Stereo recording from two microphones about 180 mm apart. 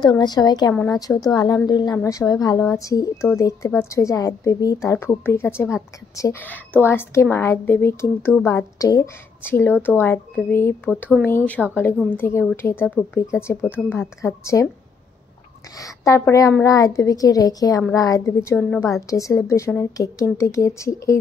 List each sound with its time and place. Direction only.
0.0 s a woman's voice: 25° left (ahead or behind)
15.8 s a woman's voice: 15° left (ahead or behind)